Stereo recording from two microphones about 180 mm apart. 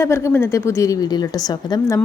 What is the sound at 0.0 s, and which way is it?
A woman's voice, 15° left (ahead or behind).